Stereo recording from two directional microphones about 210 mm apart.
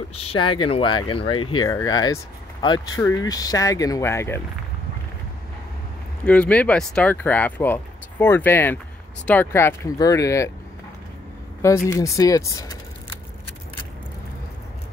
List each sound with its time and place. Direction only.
0.1 s speech: 30° left (ahead or behind); by 4.4 s 10° left (ahead or behind)
6.2 s speech: 5° left (ahead or behind)
11.6 s speech: 15° left (ahead or behind)